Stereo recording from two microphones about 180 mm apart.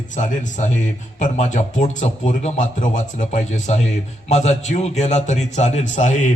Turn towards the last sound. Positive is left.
turn(degrees=45)  # may be behind; listen again after turning